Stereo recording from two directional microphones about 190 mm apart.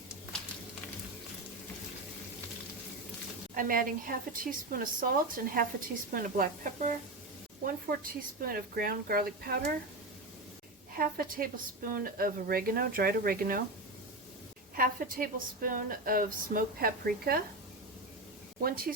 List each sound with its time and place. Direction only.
3.5 s a woman's voice: 50° right (ahead or behind)
10.9 s a woman's voice: 50° right (ahead or behind)
14.8 s a woman's voice: 50° right (ahead or behind)
18.6 s a woman's voice: 50° right (ahead or behind)